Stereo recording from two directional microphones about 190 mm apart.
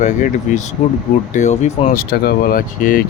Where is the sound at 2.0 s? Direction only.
55° left (ahead or behind).